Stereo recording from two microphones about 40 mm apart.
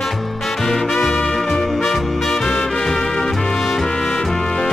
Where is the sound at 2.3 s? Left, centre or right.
Centre.